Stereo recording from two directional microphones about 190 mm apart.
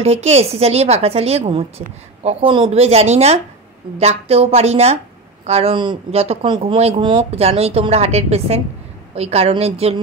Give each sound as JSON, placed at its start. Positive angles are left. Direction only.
{"t": 0.0, "sound": "a woman's voice", "side_deg": -35}